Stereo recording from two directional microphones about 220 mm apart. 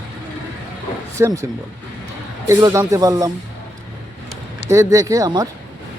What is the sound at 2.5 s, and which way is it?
Speech, 15° right (ahead or behind).